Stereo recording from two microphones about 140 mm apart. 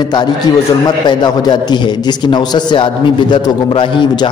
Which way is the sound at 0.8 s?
30° left (ahead or behind).